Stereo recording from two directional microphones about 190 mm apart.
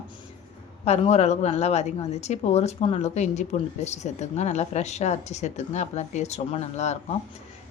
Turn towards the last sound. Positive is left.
turn(degrees=35)  # may be behind; listen again after turning